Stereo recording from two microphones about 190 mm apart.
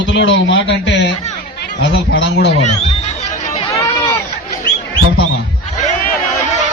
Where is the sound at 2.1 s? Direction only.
60° left (ahead or behind).